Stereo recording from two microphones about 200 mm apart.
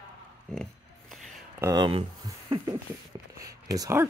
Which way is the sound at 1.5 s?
15° right (ahead or behind).